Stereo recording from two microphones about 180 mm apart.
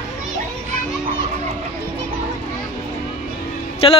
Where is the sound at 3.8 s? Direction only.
30° left (ahead or behind).